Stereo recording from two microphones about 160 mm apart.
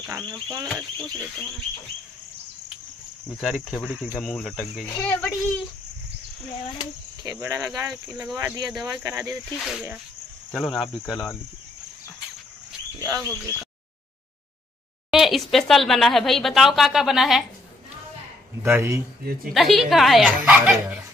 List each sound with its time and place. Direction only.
3.3 s a child's voice: centre (ahead or behind)
7.2 s speech: 20° right (ahead or behind)
9.6 s speech: 5° right (ahead or behind)
13.0 s speech: 20° right (ahead or behind)
15.0 s speech: centre (ahead or behind)
18.6 s speech: 15° right (ahead or behind)
19.5 s speech: centre (ahead or behind)